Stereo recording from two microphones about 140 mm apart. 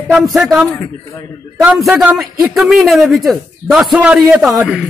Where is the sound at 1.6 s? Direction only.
Centre (ahead or behind).